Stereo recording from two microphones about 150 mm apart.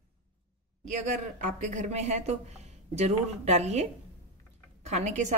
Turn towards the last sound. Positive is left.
turn(degrees=-50)  # may be behind; listen again after turning